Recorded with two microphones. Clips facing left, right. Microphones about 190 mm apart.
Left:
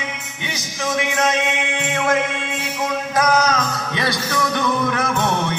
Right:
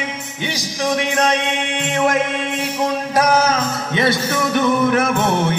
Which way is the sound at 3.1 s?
30° right (ahead or behind).